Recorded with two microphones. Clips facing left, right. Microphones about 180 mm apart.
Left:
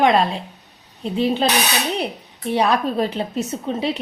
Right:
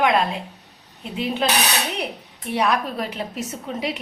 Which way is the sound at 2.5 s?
30° left (ahead or behind).